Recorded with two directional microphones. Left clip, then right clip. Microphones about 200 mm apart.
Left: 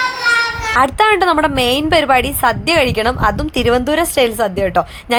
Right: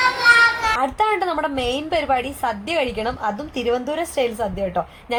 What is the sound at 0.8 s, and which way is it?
A woman's voice, 45° left (ahead or behind).